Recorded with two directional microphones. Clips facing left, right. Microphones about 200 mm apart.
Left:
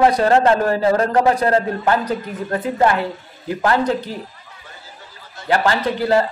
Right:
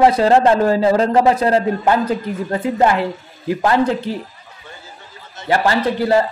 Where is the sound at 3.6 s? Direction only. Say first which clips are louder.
Right 1 dB; 25° right (ahead or behind).